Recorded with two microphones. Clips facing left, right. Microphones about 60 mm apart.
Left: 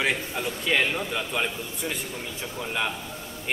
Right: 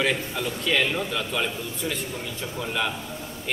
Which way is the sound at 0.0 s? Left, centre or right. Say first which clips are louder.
Right 1 dB; centre.